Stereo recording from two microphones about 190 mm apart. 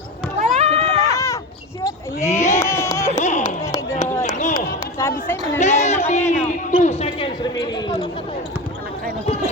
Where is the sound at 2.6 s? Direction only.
15° left (ahead or behind).